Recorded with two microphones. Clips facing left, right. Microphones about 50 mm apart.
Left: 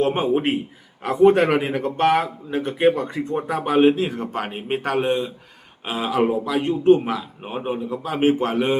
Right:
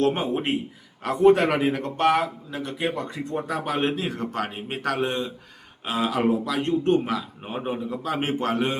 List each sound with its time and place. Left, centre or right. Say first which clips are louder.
0.0 s a man's voice: left 4 dB; centre
2.5 s a man's voice: left 9 dB; left; by 8.7 s centre